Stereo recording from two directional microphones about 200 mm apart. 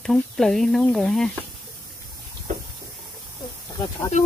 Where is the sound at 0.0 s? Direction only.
Centre (ahead or behind).